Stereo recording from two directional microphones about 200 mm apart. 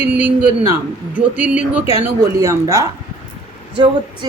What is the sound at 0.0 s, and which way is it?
A man's voice, 10° right (ahead or behind).